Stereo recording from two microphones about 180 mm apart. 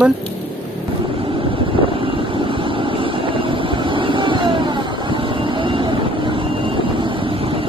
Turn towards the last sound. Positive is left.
turn(degrees=-30)  # may be behind; listen again after turning